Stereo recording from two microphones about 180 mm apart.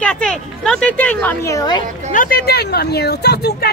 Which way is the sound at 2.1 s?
50° left (ahead or behind).